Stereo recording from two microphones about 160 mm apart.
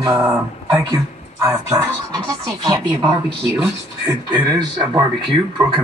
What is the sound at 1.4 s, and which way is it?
Speech, 15° right (ahead or behind).